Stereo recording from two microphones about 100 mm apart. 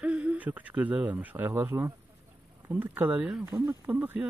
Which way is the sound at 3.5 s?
25° right (ahead or behind).